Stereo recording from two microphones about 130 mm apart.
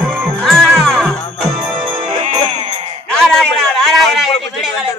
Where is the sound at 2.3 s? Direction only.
55° right (ahead or behind).